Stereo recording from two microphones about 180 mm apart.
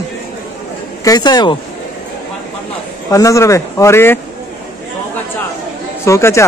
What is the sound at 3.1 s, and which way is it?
Speech, 15° left (ahead or behind).